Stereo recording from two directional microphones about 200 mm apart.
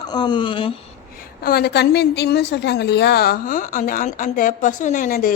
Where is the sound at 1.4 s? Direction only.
50° left (ahead or behind).